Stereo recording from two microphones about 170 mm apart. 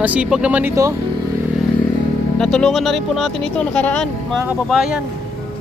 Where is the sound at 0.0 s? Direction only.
5° right (ahead or behind).